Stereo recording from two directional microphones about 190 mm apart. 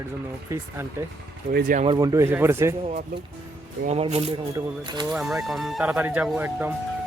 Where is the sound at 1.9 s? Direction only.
15° right (ahead or behind).